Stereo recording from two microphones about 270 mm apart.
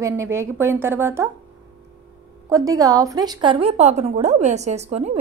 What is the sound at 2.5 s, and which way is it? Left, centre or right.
A woman's voice, centre.